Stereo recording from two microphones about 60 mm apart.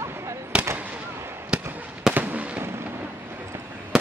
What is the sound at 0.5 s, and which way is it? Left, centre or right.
Fireworks, right.